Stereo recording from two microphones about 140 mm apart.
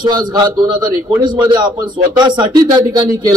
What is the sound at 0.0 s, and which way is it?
A man's voice, 30° right (ahead or behind).